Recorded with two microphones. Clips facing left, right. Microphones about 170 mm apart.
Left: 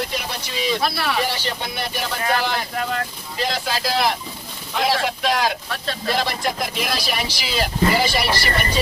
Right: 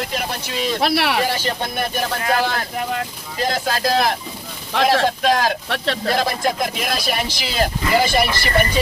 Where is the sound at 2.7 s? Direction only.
15° right (ahead or behind).